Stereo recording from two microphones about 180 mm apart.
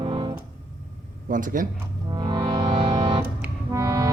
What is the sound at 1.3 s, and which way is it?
Speech, 50° right (ahead or behind).